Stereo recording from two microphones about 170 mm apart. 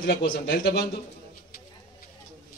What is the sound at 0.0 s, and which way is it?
Speech, 70° left (ahead or behind).